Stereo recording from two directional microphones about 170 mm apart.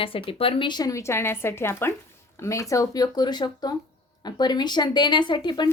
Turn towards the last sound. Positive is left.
turn(degrees=25)  # may be behind; listen again after turning